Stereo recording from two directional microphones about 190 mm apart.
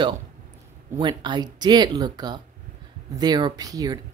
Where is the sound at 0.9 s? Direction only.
25° right (ahead or behind).